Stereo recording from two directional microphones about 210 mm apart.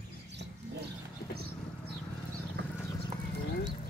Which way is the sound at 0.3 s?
55° right (ahead or behind).